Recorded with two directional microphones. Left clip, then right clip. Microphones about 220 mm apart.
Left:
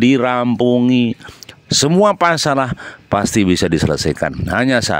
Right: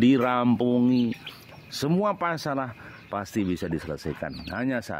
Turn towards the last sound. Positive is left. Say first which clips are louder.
# left 15 dB
turn(degrees=40)  # may be behind; listen again after turning